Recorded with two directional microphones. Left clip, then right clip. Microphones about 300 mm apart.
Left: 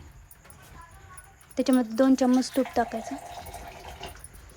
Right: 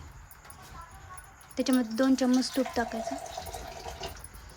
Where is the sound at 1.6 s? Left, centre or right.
Centre.